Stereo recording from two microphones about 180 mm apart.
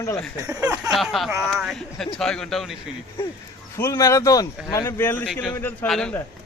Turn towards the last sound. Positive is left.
turn(degrees=5)  # may be behind; listen again after turning